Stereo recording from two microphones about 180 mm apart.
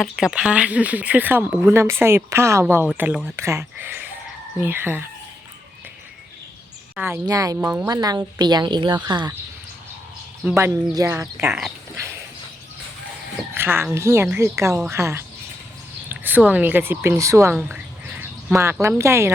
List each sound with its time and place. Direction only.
0.0 s speech: centre (ahead or behind)
6.9 s speech: 15° right (ahead or behind)
10.5 s speech: 15° right (ahead or behind)
13.5 s speech: 10° right (ahead or behind)
16.0 s a sound: 10° right (ahead or behind)
16.5 s speech: 10° right (ahead or behind)